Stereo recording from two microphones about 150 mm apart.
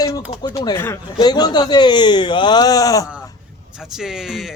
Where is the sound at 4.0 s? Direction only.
5° right (ahead or behind).